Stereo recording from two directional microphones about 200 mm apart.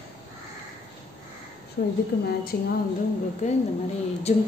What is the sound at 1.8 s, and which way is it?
Speech, 55° left (ahead or behind).